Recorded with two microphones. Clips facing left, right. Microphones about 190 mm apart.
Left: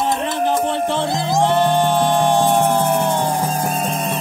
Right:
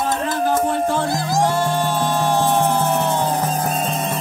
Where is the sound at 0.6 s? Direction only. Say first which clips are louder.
Even; 25° left (ahead or behind).